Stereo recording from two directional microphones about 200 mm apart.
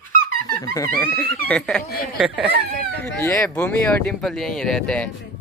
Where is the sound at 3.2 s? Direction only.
10° left (ahead or behind).